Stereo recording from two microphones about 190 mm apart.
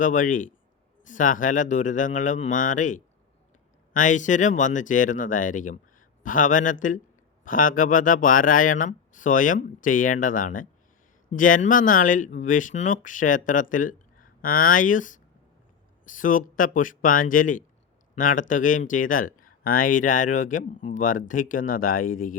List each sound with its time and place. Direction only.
0.0 s speech: 45° left (ahead or behind)